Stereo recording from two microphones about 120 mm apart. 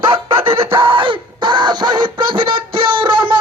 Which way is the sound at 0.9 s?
45° right (ahead or behind).